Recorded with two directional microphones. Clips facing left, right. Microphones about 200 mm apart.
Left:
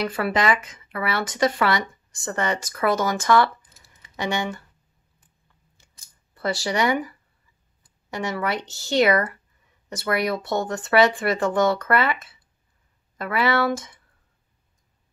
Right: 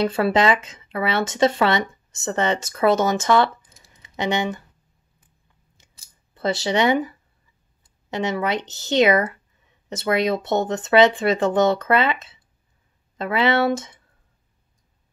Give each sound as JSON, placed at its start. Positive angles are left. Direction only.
{"t": 0.0, "sound": "speech", "side_deg": -25}
{"t": 3.9, "sound": "computer keyboard", "side_deg": -20}
{"t": 5.8, "sound": "scissors", "side_deg": -20}
{"t": 6.3, "sound": "speech", "side_deg": -20}